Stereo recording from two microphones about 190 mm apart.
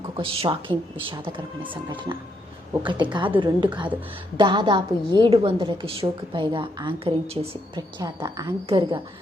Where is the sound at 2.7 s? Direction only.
25° right (ahead or behind).